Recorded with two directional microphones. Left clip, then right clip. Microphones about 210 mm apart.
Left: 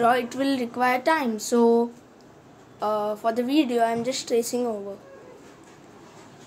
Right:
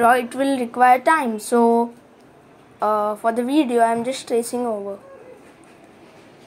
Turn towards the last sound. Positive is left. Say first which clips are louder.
# right 3 dB
turn(degrees=-5)  # may be behind; listen again after turning